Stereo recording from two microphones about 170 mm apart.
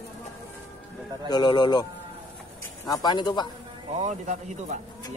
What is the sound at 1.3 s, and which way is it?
Speech, 25° left (ahead or behind).